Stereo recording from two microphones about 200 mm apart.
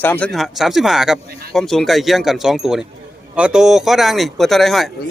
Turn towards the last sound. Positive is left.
turn(degrees=0)  # may be behind; listen again after turning